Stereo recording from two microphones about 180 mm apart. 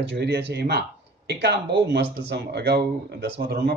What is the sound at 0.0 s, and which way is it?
Speech, 70° right (ahead or behind).